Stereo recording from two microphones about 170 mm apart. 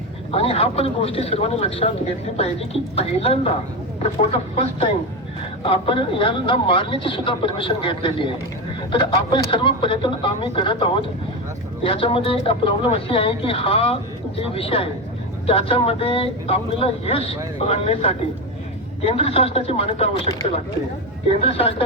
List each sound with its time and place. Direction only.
0.3 s speech: 35° left (ahead or behind)
21.4 s speech: 35° left (ahead or behind)